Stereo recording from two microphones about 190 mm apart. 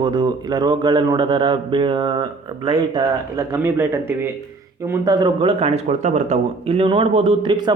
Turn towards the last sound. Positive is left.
turn(degrees=-25)  # may be behind; listen again after turning